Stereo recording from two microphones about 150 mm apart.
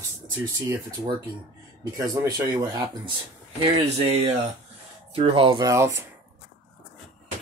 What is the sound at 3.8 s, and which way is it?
Speech, 45° right (ahead or behind).